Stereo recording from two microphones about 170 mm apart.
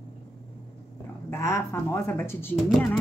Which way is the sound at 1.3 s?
15° left (ahead or behind).